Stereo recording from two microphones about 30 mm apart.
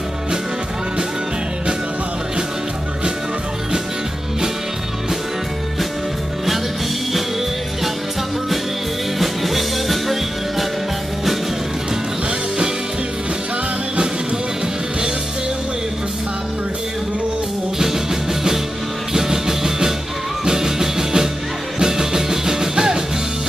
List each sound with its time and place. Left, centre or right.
9.2 s music: centre
17.7 s music: centre